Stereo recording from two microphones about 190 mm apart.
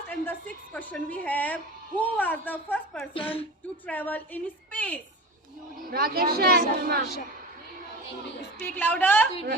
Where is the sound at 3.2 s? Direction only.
25° left (ahead or behind).